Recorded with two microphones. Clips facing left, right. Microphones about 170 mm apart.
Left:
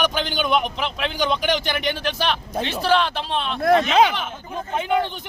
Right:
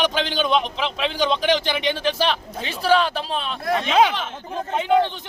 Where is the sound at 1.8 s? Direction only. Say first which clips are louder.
Right 3 dB; centre (ahead or behind).